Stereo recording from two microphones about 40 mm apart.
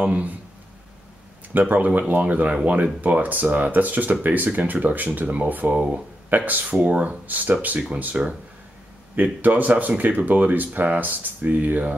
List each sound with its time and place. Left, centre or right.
0.0 s speech: right
1.5 s speech: right
6.7 s speech: right